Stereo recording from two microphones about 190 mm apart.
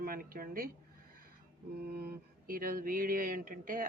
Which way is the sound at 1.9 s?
50° right (ahead or behind).